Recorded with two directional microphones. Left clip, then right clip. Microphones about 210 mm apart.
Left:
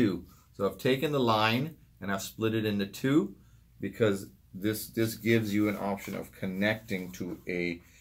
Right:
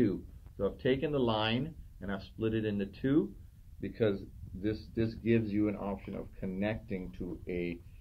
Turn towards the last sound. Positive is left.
turn(degrees=10)  # may be behind; listen again after turning